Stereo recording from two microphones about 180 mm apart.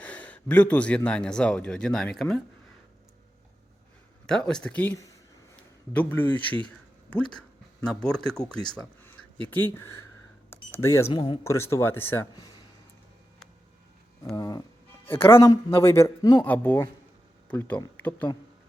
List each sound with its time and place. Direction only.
0.0 s speech: 10° left (ahead or behind)
4.3 s speech: 5° left (ahead or behind)
14.3 s a sound: 20° left (ahead or behind)
15.3 s speech: 15° left (ahead or behind)